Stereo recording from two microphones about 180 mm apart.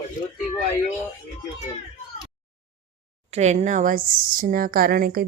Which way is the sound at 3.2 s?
40° right (ahead or behind).